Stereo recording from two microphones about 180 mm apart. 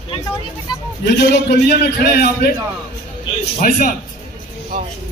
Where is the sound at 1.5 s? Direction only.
65° left (ahead or behind).